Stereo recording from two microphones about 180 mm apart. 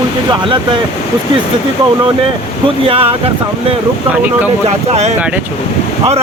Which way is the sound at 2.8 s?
30° right (ahead or behind).